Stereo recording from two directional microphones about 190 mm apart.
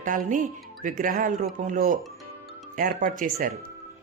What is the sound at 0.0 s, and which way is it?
Speech, 45° right (ahead or behind).